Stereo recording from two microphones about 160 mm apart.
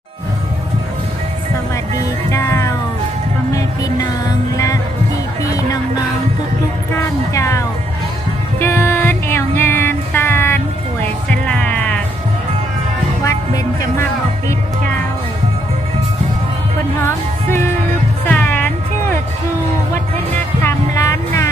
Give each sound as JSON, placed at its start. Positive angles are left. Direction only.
{"t": 1.7, "sound": "music", "side_deg": 20}
{"t": 6.9, "sound": "speech", "side_deg": 20}
{"t": 8.5, "sound": "music", "side_deg": 15}
{"t": 13.2, "sound": "music", "side_deg": 20}
{"t": 17.0, "sound": "music", "side_deg": 15}
{"t": 20.6, "sound": "music", "side_deg": 20}